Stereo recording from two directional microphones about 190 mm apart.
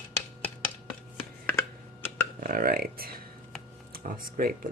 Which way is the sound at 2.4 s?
50° right (ahead or behind).